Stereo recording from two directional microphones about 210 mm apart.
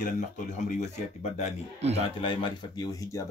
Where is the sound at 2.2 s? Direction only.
20° left (ahead or behind).